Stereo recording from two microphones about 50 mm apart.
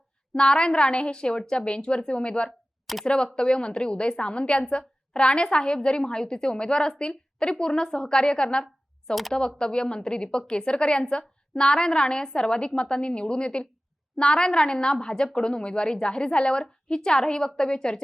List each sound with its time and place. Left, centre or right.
0.3 s a woman's voice: centre